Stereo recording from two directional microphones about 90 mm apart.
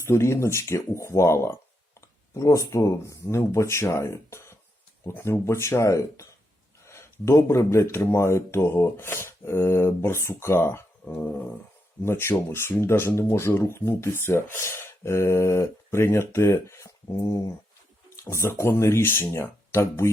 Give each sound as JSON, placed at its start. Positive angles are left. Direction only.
{"t": 0.0, "sound": "speech", "side_deg": 30}
{"t": 11.0, "sound": "dog", "side_deg": 20}
{"t": 12.0, "sound": "speech", "side_deg": 25}
{"t": 18.3, "sound": "speech", "side_deg": 30}